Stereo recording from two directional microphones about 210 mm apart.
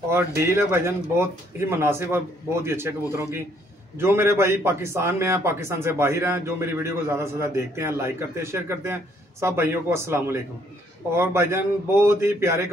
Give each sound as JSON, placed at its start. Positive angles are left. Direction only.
{"t": 0.1, "sound": "a man's voice", "side_deg": -10}